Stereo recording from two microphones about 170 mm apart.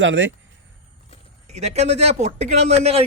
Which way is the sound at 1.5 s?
40° right (ahead or behind).